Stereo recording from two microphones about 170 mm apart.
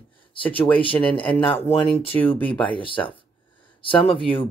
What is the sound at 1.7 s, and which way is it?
Speech, 35° left (ahead or behind).